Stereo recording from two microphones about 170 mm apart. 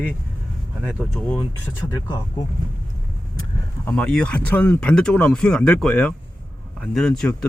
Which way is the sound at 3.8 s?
5° left (ahead or behind).